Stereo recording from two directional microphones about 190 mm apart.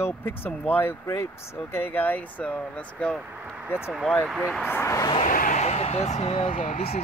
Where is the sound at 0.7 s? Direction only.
10° left (ahead or behind).